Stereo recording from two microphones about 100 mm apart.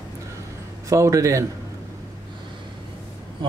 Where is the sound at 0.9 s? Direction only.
30° right (ahead or behind).